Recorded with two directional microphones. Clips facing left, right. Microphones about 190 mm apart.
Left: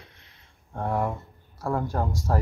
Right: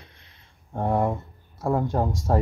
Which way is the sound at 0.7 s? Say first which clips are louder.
Right 4 dB; 25° right (ahead or behind).